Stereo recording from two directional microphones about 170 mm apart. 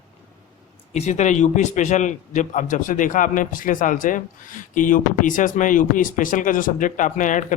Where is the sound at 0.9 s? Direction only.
40° left (ahead or behind).